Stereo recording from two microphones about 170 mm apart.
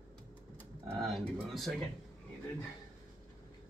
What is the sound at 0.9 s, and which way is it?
Speech, centre (ahead or behind).